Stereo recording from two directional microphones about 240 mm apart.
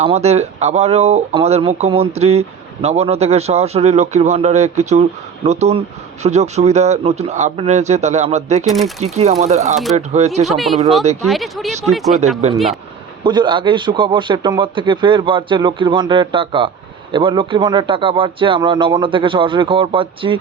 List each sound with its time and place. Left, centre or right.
0.0 s a man's voice: right
10.4 s speech: centre
11.0 s a man's voice: right
11.3 s speech: centre
13.2 s a man's voice: centre